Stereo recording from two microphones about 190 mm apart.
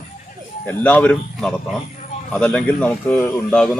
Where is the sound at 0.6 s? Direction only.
10° left (ahead or behind).